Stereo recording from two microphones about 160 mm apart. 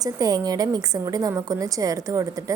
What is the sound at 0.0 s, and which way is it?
A woman's voice, 25° right (ahead or behind).